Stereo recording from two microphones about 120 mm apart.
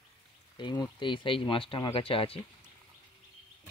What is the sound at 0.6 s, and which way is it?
Speech, 35° left (ahead or behind).